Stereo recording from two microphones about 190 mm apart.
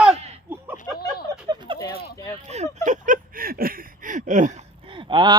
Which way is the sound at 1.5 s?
25° right (ahead or behind).